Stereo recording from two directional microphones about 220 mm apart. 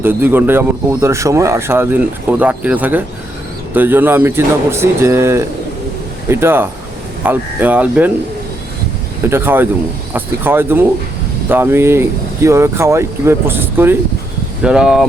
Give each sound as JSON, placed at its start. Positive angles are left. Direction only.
{"t": 0.0, "sound": "speech", "side_deg": -10}
{"t": 9.2, "sound": "speech", "side_deg": -10}